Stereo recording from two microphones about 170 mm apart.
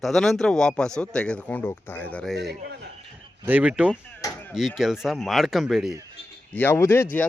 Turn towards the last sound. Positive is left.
turn(degrees=15)  # may be behind; listen again after turning